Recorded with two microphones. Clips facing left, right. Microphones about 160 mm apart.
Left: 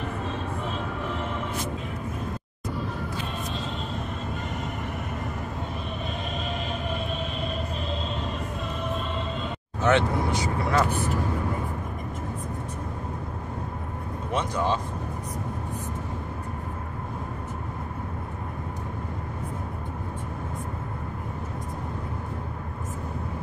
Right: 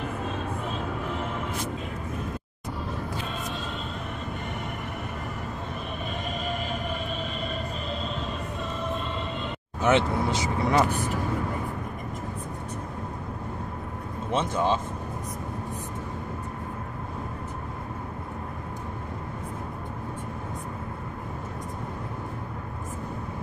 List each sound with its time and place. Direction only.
9.8 s speech: 20° right (ahead or behind)
14.3 s speech: 20° right (ahead or behind)